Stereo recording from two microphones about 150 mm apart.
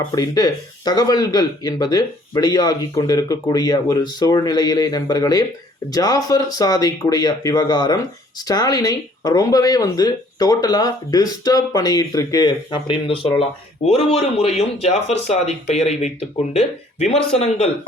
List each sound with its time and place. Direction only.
0.1 s speech: 25° left (ahead or behind); by 17.7 s 45° left (ahead or behind)